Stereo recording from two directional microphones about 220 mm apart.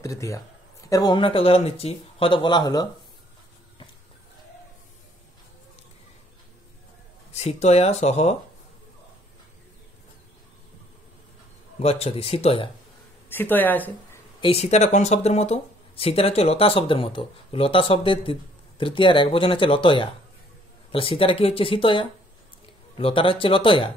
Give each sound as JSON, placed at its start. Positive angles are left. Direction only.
{"t": 0.0, "sound": "speech", "side_deg": 15}
{"t": 7.3, "sound": "speech", "side_deg": 30}
{"t": 11.8, "sound": "speech", "side_deg": 25}
{"t": 13.3, "sound": "speech", "side_deg": 10}
{"t": 14.4, "sound": "speech", "side_deg": 25}